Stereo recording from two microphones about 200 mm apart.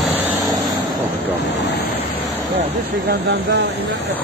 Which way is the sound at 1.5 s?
60° left (ahead or behind).